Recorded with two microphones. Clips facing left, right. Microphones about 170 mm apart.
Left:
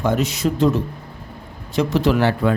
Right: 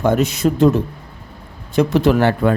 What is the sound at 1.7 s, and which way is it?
Speech, 55° right (ahead or behind).